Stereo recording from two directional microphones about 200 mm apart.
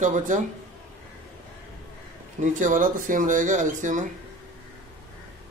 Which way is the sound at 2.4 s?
40° right (ahead or behind).